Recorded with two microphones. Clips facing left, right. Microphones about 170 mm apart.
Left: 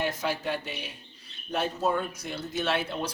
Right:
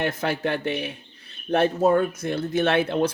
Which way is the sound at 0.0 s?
60° right (ahead or behind).